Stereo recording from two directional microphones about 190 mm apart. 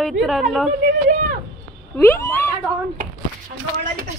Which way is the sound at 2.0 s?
15° left (ahead or behind).